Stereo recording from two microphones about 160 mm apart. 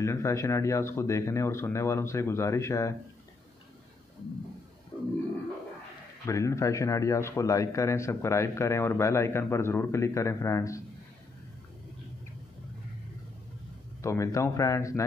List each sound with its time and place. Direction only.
0.0 s a man's voice: 20° left (ahead or behind)
6.2 s a man's voice: 20° left (ahead or behind)
14.0 s speech: 20° left (ahead or behind)